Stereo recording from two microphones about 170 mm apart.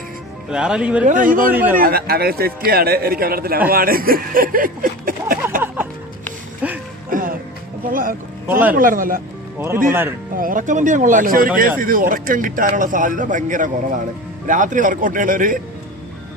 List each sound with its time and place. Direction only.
0.5 s speech: 5° right (ahead or behind)
1.0 s a man's voice: 50° right (ahead or behind)
1.5 s speech: 10° right (ahead or behind)
1.7 s a man's voice: 60° right (ahead or behind)
5.6 s music: 10° right (ahead or behind)
7.1 s music: 55° right (ahead or behind)
8.4 s speech: 10° right (ahead or behind)
8.7 s a man's voice: 55° right (ahead or behind)
9.6 s speech: 15° right (ahead or behind)
10.3 s a man's voice: 55° right (ahead or behind)